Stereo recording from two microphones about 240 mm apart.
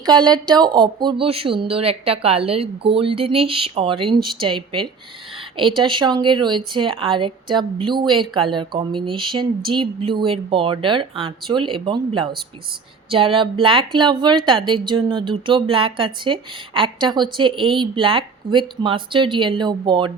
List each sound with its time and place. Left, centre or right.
0.0 s speech: centre